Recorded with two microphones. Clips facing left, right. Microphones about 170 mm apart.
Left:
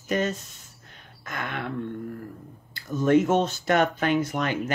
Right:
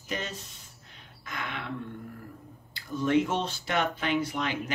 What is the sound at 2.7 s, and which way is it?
Speech, 45° left (ahead or behind).